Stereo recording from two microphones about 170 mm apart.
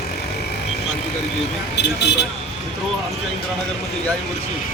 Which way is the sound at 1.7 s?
80° left.